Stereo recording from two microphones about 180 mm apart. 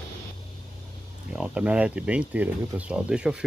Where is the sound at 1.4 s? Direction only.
5° right (ahead or behind).